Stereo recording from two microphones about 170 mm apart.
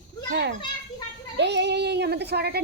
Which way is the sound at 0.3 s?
75° right (ahead or behind).